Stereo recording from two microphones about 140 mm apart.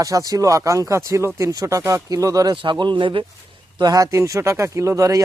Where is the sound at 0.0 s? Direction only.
25° right (ahead or behind).